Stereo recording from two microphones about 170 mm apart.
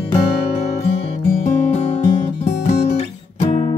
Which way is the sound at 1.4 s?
45° left (ahead or behind).